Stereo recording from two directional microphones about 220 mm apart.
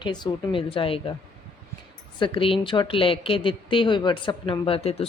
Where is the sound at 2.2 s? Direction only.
25° left (ahead or behind).